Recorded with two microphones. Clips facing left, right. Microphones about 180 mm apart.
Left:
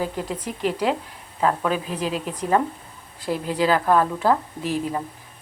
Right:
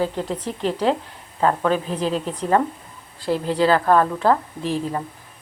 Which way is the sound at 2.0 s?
35° right (ahead or behind).